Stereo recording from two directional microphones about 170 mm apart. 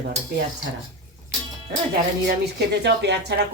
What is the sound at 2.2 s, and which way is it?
Speech, 80° right.